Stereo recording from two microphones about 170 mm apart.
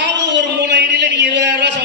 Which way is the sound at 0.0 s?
90° right.